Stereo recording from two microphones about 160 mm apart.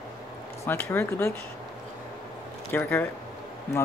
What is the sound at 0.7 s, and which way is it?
Speech, 15° left (ahead or behind).